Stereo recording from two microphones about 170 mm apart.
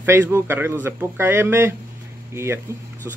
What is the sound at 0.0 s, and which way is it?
A man's voice, 15° right (ahead or behind).